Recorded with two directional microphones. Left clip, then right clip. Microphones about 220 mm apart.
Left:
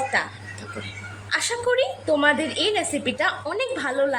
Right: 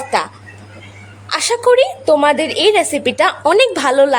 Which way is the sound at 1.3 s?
30° right (ahead or behind).